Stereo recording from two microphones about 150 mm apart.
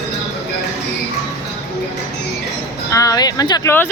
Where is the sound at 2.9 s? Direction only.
25° left (ahead or behind).